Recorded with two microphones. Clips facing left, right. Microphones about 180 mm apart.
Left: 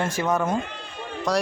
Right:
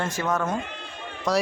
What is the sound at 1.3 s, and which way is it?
Speech, centre (ahead or behind).